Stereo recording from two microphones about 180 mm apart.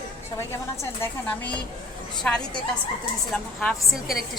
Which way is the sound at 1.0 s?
5° left (ahead or behind).